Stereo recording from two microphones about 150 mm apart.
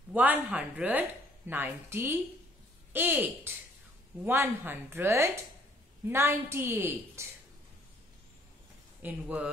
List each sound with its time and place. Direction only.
0.1 s a woman's voice: 10° right (ahead or behind)
9.0 s a woman's voice: 10° right (ahead or behind)